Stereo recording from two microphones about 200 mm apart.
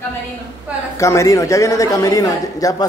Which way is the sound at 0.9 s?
15° left (ahead or behind).